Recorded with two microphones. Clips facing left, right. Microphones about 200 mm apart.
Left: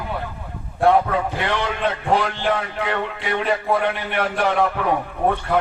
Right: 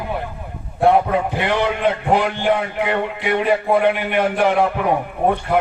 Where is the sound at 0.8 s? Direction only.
15° right (ahead or behind).